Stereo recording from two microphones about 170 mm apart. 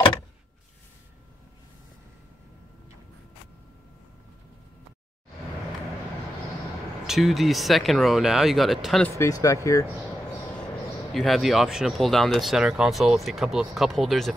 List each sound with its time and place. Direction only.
7.1 s speech: centre (ahead or behind)
9.2 s speech: 20° left (ahead or behind)
11.1 s speech: centre (ahead or behind)